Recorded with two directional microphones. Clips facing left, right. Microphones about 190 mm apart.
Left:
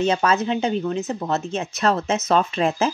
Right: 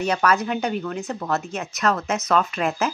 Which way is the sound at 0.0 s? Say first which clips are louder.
Left 2 dB; 25° left (ahead or behind).